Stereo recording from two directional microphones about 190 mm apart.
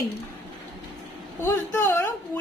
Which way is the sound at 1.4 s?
10° left (ahead or behind).